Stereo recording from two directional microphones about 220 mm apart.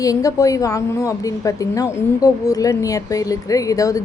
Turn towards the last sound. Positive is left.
turn(degrees=15)  # may be behind; listen again after turning